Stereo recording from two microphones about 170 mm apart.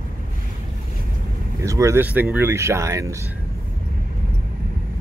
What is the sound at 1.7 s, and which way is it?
Speech, 20° right (ahead or behind).